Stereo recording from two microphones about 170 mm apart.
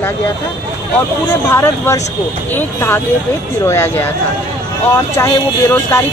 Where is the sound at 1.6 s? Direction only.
15° left (ahead or behind).